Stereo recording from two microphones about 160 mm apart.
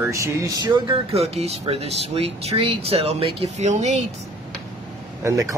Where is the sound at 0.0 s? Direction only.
20° right (ahead or behind).